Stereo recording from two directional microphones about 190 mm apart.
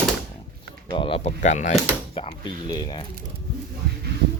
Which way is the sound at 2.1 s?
25° left (ahead or behind).